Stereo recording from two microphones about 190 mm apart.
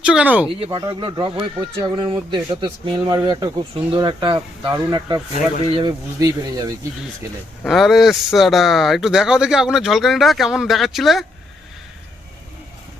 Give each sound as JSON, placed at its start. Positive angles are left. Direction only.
{"t": 0.0, "sound": "speech", "side_deg": -5}
{"t": 0.6, "sound": "speech", "side_deg": -25}
{"t": 7.6, "sound": "speech", "side_deg": 0}